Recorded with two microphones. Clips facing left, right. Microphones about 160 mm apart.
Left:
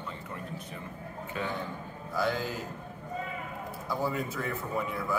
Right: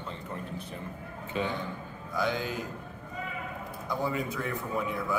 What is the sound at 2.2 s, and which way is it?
Speech, centre (ahead or behind).